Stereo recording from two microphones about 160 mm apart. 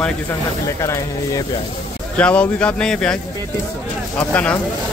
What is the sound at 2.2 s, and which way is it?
Speech, 10° left (ahead or behind).